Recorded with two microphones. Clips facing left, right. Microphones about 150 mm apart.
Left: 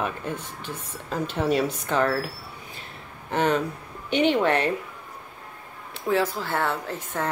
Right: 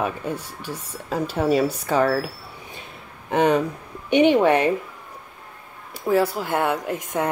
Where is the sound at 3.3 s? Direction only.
15° right (ahead or behind).